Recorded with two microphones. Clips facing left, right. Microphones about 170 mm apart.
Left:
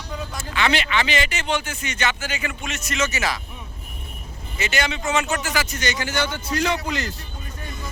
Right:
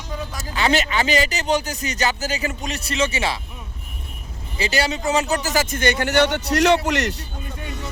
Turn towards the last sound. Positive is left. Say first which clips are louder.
# right 7 dB
turn(degrees=-75)  # may be behind; listen again after turning